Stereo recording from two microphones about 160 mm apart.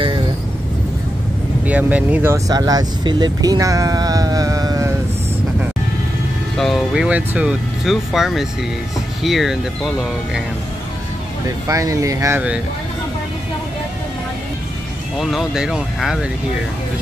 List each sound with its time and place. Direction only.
1.7 s speech: 10° right (ahead or behind)
6.5 s speech: centre (ahead or behind)
11.6 s speech: 20° right (ahead or behind)
15.1 s speech: centre (ahead or behind)